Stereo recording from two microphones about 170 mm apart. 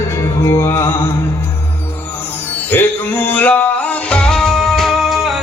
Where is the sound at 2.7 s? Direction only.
10° left (ahead or behind).